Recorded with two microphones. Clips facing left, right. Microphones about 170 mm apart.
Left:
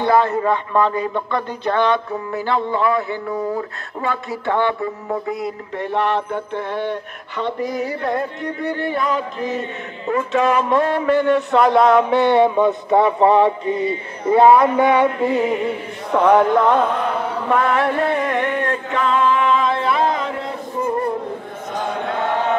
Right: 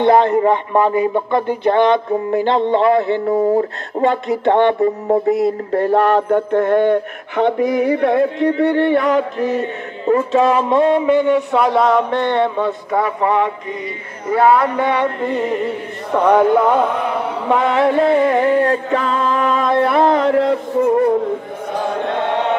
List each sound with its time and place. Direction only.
0.0 s a man's voice: 20° right (ahead or behind)
2.1 s music: 25° right (ahead or behind)
3.3 s mantra: 40° right (ahead or behind)
4.0 s music: 20° right (ahead or behind)
4.7 s mantra: 40° right (ahead or behind); by 9.2 s 70° right (ahead or behind)
9.6 s a man's voice: 35° right (ahead or behind); by 12.7 s 10° left (ahead or behind)
12.9 s speech: 25° left (ahead or behind); by 16.8 s 5° right (ahead or behind)
17.5 s music: 20° right (ahead or behind); by 20.9 s 75° right (ahead or behind)